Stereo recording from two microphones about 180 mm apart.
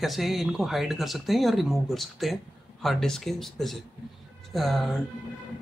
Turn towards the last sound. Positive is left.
turn(degrees=0)  # may be behind; listen again after turning